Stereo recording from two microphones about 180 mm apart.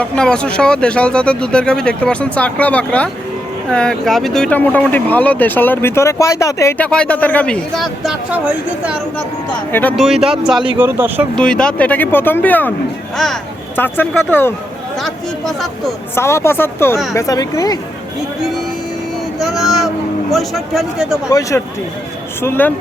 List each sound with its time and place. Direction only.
0.0 s speech: 5° left (ahead or behind); by 11.3 s 10° right (ahead or behind)
11.3 s speech: 5° left (ahead or behind)
13.7 s speech: 10° left (ahead or behind)
16.1 s speech: 15° left (ahead or behind)
19.4 s speech: centre (ahead or behind)
21.2 s speech: 20° left (ahead or behind)